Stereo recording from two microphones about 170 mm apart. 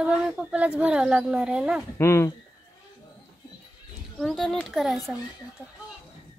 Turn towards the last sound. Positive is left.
turn(degrees=0)  # may be behind; listen again after turning